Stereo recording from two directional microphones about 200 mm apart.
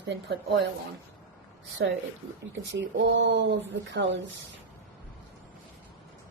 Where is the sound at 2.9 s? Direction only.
65° right (ahead or behind).